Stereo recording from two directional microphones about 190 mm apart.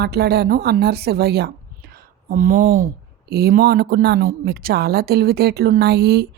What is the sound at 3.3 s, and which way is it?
A woman's voice, 55° right (ahead or behind).